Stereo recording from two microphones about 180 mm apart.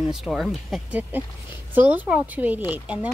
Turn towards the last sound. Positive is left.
turn(degrees=-10)  # may be behind; listen again after turning